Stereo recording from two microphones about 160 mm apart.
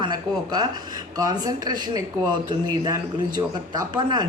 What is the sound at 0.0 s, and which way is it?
Speech, 25° right (ahead or behind).